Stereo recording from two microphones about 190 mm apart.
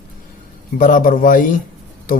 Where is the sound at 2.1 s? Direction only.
50° left (ahead or behind).